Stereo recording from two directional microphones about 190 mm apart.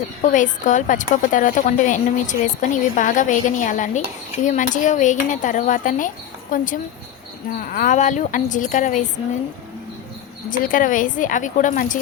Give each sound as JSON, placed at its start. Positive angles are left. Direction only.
{"t": 0.2, "sound": "a woman's voice", "side_deg": 40}
{"t": 10.5, "sound": "a woman's voice", "side_deg": 45}